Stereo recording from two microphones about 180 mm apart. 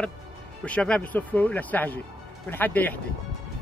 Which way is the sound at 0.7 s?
5° left (ahead or behind).